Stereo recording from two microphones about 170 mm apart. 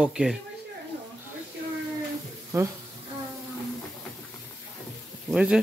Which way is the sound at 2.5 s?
15° right (ahead or behind).